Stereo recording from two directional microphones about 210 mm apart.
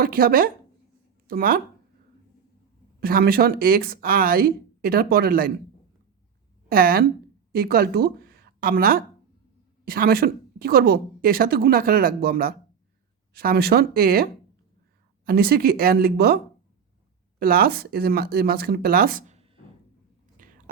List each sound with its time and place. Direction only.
0.0 s a woman's voice: 45° right (ahead or behind)
3.0 s a woman's voice: 45° right (ahead or behind)
6.7 s a woman's voice: 45° right (ahead or behind)
17.4 s a woman's voice: 45° right (ahead or behind)
20.4 s chewing: 40° right (ahead or behind)